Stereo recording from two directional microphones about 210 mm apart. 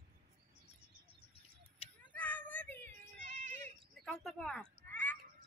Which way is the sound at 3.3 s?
35° right (ahead or behind).